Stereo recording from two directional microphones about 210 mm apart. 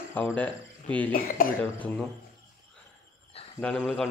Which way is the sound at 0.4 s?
5° left (ahead or behind).